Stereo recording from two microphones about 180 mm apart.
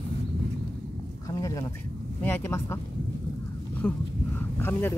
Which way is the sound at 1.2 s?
15° left (ahead or behind).